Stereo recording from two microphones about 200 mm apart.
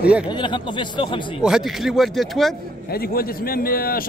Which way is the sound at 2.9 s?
50° left (ahead or behind).